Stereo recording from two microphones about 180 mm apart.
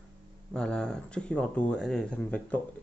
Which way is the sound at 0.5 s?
5° left (ahead or behind).